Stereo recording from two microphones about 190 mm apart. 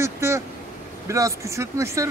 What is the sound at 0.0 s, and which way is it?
Vehicle, 15° right (ahead or behind).